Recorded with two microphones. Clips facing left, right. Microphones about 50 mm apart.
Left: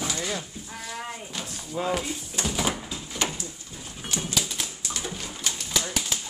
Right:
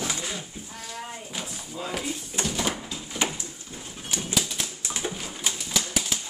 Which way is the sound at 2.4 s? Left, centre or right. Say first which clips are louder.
Left 1 dB; centre.